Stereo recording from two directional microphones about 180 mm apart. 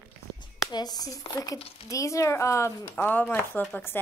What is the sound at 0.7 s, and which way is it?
A woman's voice, 20° left (ahead or behind).